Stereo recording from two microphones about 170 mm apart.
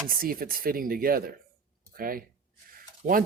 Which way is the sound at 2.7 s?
55° right (ahead or behind).